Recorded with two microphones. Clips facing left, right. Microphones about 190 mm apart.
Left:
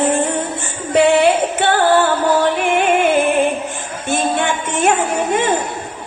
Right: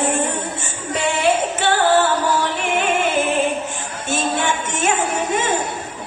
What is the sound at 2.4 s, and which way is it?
Music, 55° left (ahead or behind).